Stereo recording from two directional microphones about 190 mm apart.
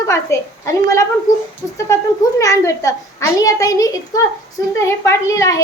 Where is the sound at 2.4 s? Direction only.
15° left (ahead or behind).